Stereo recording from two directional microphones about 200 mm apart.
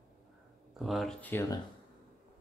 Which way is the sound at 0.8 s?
Centre (ahead or behind).